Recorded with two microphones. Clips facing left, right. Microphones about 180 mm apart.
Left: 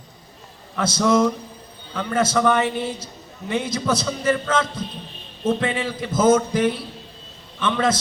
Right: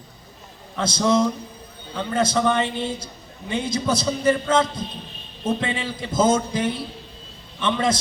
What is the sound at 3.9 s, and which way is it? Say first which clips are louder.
Speech: right 1 dB; 15° right (ahead or behind).